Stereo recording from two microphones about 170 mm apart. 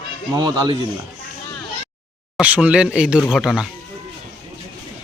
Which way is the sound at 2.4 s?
10° right (ahead or behind).